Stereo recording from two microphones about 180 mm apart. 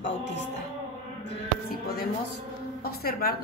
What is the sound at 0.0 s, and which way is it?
Speech, 75° left (ahead or behind).